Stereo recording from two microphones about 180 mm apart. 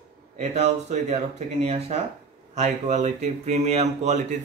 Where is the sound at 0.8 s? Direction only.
40° right (ahead or behind).